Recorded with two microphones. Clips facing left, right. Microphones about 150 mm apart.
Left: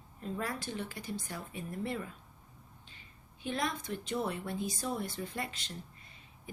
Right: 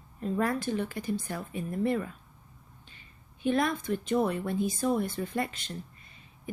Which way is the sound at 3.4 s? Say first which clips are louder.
Right 8 dB; 55° right (ahead or behind).